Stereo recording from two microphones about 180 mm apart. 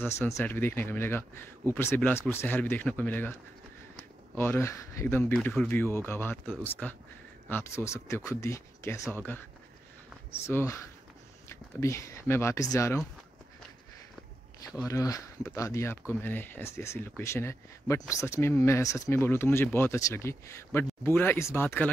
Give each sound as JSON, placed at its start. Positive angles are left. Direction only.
{"t": 0.0, "sound": "speech", "side_deg": 10}
{"t": 4.4, "sound": "speech", "side_deg": 15}
{"t": 10.4, "sound": "speech", "side_deg": 15}
{"t": 14.9, "sound": "speech", "side_deg": 20}